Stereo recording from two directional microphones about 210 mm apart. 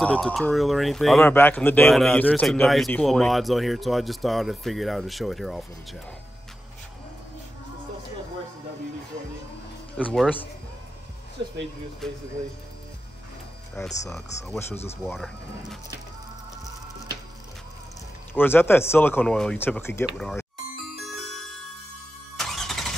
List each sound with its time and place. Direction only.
0.0 s speech: 5° left (ahead or behind)
10.0 s speech: 5° left (ahead or behind)
11.4 s speech: 20° right (ahead or behind)
12.0 s speech: centre (ahead or behind)
14.1 s speech: centre (ahead or behind)
18.3 s speech: 10° left (ahead or behind)
22.4 s vehicle: centre (ahead or behind)